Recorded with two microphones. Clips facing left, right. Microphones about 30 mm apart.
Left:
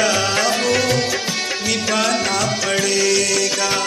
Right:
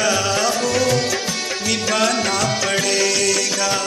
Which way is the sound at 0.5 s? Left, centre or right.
Left.